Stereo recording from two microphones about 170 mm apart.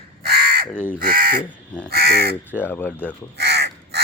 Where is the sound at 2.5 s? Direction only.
10° left (ahead or behind).